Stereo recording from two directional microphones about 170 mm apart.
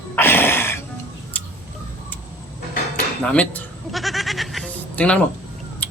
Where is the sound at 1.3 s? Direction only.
10° left (ahead or behind).